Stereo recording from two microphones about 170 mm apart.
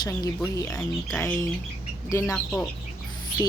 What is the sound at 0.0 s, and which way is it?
A woman's voice, 20° left (ahead or behind).